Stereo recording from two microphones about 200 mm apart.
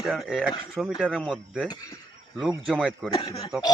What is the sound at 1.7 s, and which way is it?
Speech, 20° left (ahead or behind).